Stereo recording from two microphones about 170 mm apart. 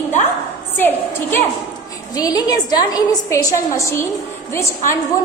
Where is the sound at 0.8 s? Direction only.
10° left (ahead or behind).